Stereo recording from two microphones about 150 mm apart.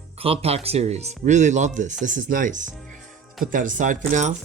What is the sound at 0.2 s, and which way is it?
Speech, 40° right (ahead or behind).